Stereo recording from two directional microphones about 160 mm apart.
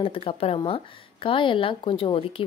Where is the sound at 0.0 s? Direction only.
35° left (ahead or behind).